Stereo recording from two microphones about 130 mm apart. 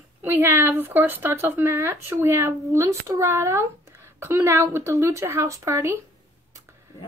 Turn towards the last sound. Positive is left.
turn(degrees=-20)  # may be behind; listen again after turning